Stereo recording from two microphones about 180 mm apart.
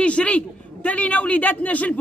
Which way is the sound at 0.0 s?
5° left (ahead or behind).